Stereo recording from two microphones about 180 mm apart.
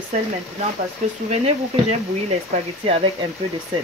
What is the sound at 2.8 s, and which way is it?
Speech, 30° right (ahead or behind).